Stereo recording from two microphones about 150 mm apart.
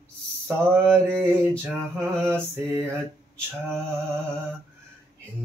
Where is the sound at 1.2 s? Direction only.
15° right (ahead or behind).